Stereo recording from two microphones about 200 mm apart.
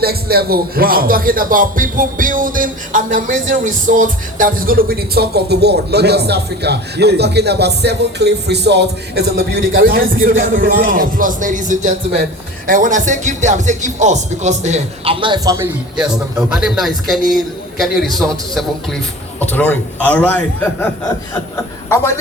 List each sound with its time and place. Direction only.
0.0 s a man's voice: 50° right (ahead or behind); by 22.1 s 15° left (ahead or behind)